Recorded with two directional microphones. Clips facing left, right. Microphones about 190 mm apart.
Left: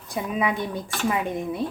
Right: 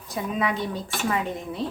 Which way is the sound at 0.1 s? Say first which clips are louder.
Left 1 dB; 15° left (ahead or behind).